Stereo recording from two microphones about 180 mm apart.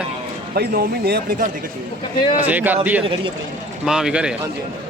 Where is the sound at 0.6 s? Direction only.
60° right (ahead or behind).